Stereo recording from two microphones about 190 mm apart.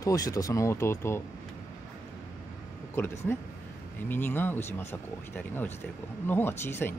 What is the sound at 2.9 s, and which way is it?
Speech, 10° left (ahead or behind).